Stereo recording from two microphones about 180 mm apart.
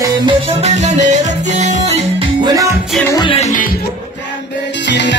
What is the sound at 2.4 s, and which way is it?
Music, 20° right (ahead or behind).